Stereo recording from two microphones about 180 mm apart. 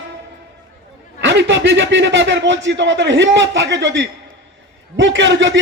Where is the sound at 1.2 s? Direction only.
70° right (ahead or behind).